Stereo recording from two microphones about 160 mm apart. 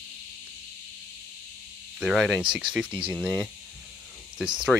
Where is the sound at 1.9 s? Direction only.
Centre (ahead or behind).